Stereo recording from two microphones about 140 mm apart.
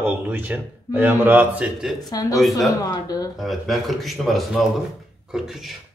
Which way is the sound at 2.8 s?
25° left (ahead or behind).